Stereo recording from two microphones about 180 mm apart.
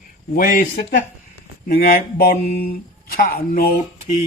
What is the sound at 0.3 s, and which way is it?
Speech, 50° left (ahead or behind).